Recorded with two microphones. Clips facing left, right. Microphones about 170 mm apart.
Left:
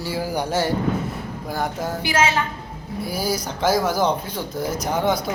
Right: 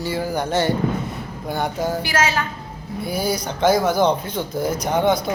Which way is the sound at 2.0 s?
25° left (ahead or behind).